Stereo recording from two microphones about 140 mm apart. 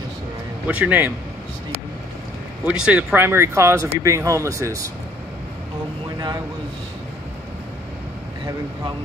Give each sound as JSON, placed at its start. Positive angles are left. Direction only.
{"t": 0.7, "sound": "speech", "side_deg": -10}
{"t": 2.6, "sound": "speech", "side_deg": -10}
{"t": 6.1, "sound": "speech", "side_deg": -30}